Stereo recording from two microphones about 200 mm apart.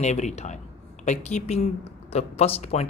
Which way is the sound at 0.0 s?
35° left (ahead or behind).